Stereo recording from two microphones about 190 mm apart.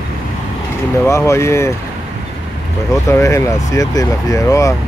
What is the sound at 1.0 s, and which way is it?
Speech, 15° left (ahead or behind).